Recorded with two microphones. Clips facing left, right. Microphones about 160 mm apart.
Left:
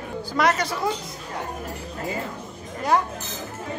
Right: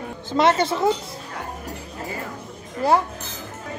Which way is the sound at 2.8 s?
30° right (ahead or behind).